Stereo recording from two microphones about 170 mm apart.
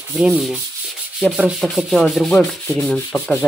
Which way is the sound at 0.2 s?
5° right (ahead or behind).